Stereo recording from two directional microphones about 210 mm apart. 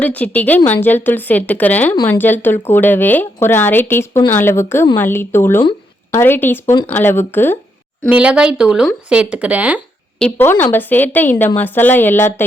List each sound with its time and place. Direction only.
0.0 s speech: 5° left (ahead or behind)
8.1 s speech: 5° right (ahead or behind)
10.2 s speech: 10° left (ahead or behind)